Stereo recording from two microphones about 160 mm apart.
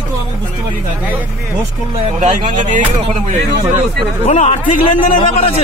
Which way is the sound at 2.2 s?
50° right (ahead or behind).